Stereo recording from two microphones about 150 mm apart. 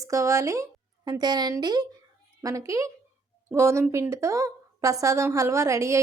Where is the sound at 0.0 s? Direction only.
20° right (ahead or behind).